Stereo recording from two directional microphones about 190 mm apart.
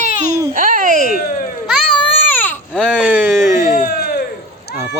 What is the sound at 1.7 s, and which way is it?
Baby cry, 5° left (ahead or behind).